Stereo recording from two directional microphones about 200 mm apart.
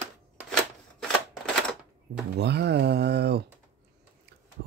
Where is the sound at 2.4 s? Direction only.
55° right (ahead or behind).